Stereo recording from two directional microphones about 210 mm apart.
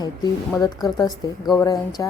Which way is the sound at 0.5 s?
15° left (ahead or behind).